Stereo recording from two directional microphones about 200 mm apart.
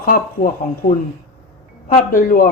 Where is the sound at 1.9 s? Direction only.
45° left (ahead or behind).